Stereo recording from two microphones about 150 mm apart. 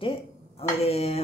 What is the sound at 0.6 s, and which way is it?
Speech, 45° left (ahead or behind).